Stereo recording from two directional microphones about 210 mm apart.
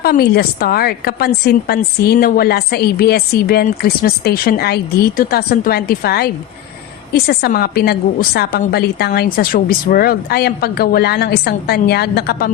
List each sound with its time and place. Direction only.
0.0 s speech: 50° left (ahead or behind)